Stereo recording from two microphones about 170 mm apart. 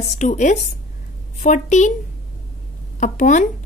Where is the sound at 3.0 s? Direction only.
45° left (ahead or behind).